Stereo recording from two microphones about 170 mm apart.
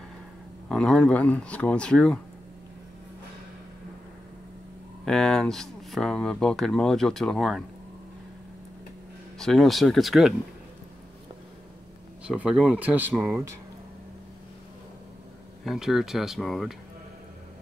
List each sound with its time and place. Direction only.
0.7 s speech: 5° left (ahead or behind)
5.0 s speech: 5° left (ahead or behind)
9.4 s speech: centre (ahead or behind)
12.3 s speech: 5° right (ahead or behind)
15.6 s speech: centre (ahead or behind)